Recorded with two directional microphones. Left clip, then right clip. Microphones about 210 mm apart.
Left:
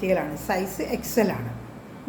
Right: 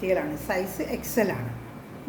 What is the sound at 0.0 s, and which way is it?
A woman's voice, 15° left (ahead or behind).